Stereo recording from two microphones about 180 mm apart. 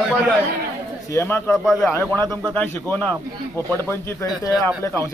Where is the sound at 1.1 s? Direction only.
15° left (ahead or behind).